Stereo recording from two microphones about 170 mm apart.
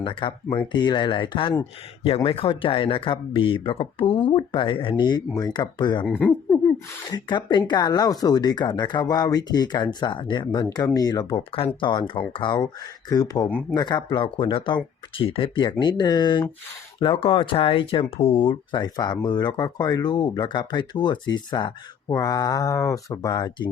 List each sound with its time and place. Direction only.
0.0 s speech: 30° left (ahead or behind)
6.1 s speech: 10° left (ahead or behind)
7.1 s speech: 25° left (ahead or behind)
13.5 s speech: 10° left (ahead or behind)
13.7 s speech: 25° left (ahead or behind)